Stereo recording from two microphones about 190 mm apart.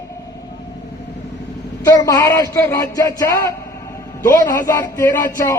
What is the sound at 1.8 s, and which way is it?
A man's voice, 15° left (ahead or behind).